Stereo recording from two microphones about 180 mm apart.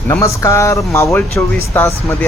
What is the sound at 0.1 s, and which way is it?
Speech, 15° left (ahead or behind).